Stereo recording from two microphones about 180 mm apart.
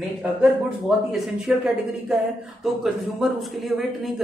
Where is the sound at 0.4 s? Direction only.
Centre (ahead or behind).